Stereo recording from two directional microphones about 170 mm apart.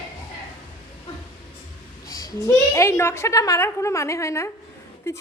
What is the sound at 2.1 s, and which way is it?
A woman's voice, 20° left (ahead or behind).